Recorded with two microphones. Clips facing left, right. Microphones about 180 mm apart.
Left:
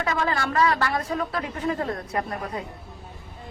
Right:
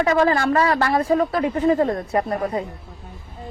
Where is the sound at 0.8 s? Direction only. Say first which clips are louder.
Right 8 dB; 40° right (ahead or behind).